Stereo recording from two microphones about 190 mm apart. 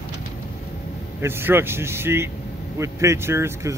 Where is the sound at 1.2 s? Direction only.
10° right (ahead or behind).